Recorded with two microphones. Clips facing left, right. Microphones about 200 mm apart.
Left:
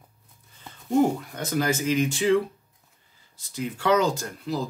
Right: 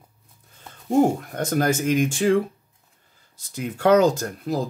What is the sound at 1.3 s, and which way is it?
Speech, 50° right (ahead or behind).